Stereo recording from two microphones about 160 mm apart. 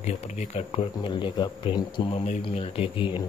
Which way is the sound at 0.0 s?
40° left (ahead or behind).